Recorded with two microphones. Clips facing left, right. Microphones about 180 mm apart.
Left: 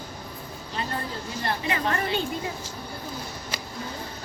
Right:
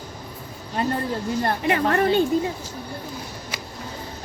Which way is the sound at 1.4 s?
60° right (ahead or behind).